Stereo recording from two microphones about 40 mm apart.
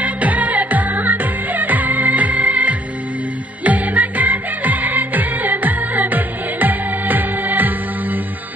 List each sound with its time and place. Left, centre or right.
0.0 s music: right